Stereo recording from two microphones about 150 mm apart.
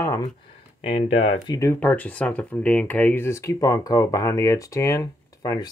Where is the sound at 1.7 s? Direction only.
10° left (ahead or behind).